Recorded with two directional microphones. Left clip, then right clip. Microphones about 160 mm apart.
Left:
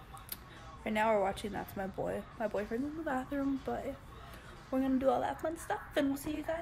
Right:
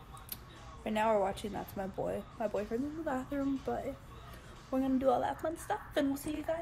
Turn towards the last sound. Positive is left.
turn(degrees=5)  # may be behind; listen again after turning